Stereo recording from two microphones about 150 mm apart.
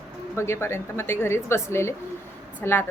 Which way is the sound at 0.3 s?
15° left (ahead or behind).